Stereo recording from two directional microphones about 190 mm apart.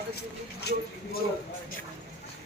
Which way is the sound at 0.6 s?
60° left (ahead or behind).